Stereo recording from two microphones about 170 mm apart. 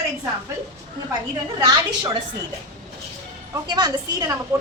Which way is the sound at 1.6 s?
25° right (ahead or behind).